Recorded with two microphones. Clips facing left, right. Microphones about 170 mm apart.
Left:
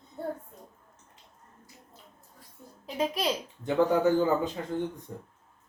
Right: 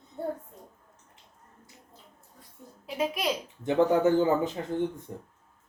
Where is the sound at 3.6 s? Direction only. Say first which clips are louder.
Right 1 dB; 20° right (ahead or behind).